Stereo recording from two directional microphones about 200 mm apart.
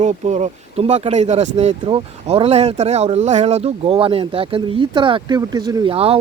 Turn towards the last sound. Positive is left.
turn(degrees=-30)  # may be behind; listen again after turning